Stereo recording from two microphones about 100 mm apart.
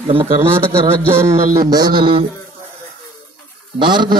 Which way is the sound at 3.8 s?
50° right (ahead or behind).